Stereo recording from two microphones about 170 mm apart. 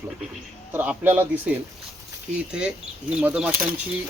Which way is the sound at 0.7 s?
10° right (ahead or behind).